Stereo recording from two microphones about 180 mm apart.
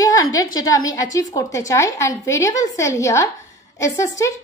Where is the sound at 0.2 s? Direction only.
90° left.